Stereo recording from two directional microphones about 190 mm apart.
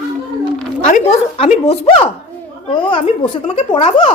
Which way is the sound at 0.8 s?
40° left (ahead or behind).